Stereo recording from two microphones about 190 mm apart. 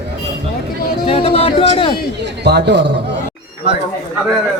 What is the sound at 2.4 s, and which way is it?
Speech, 60° right (ahead or behind).